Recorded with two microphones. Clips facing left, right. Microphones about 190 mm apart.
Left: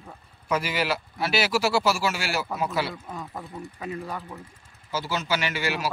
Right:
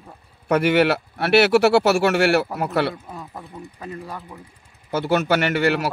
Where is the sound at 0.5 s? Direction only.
65° right (ahead or behind).